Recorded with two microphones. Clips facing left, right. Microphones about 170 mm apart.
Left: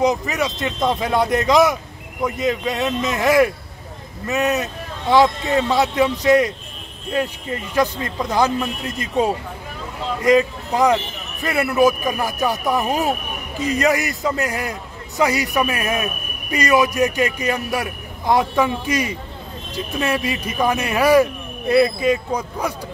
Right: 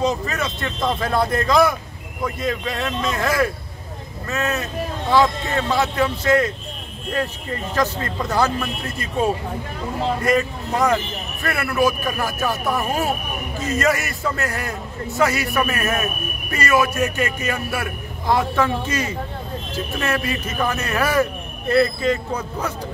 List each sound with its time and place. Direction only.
0.0 s a man's voice: 15° left (ahead or behind)